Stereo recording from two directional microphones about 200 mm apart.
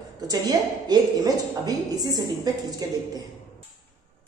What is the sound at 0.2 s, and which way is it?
A woman's voice, 20° right (ahead or behind).